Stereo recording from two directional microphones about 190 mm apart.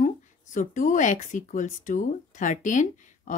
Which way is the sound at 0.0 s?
45° left (ahead or behind).